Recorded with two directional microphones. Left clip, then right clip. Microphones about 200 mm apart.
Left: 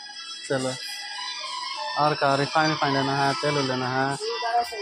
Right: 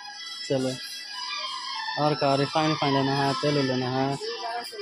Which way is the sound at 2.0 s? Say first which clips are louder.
Left 2 dB; 20° right (ahead or behind).